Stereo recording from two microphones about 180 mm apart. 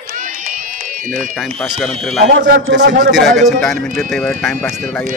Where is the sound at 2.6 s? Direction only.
75° right (ahead or behind).